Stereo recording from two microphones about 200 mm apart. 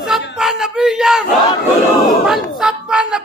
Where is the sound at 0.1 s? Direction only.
5° right (ahead or behind).